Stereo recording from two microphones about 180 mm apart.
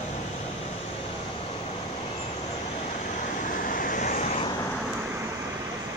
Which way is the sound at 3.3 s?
50° left (ahead or behind).